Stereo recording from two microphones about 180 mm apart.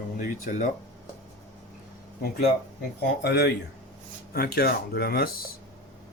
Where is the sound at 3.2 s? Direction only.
70° left (ahead or behind).